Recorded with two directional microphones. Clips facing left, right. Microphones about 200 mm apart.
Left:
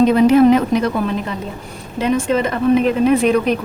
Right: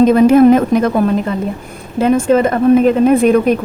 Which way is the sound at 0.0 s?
45° right (ahead or behind).